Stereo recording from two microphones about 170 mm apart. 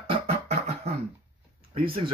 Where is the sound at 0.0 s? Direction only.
35° right (ahead or behind).